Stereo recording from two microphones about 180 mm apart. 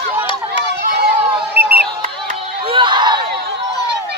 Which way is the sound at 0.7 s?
60° right (ahead or behind).